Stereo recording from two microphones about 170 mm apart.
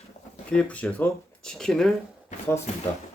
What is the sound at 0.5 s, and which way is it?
Speech, 5° left (ahead or behind).